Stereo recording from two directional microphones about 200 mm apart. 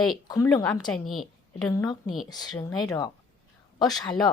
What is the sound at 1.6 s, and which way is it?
A woman's voice, 20° left (ahead or behind).